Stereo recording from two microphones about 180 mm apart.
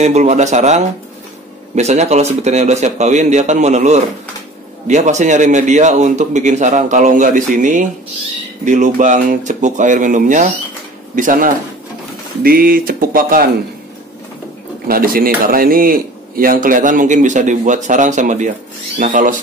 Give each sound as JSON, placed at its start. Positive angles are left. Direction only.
{"t": 0.0, "sound": "a man's voice", "side_deg": -40}
{"t": 14.9, "sound": "speech", "side_deg": -55}